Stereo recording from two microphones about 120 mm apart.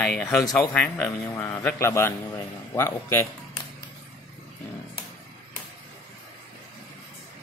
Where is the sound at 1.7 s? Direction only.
25° left (ahead or behind).